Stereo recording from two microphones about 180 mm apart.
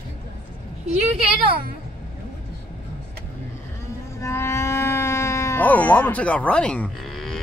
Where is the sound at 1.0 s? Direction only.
35° right (ahead or behind).